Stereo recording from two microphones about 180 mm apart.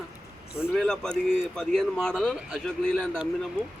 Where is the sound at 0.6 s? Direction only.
Centre (ahead or behind).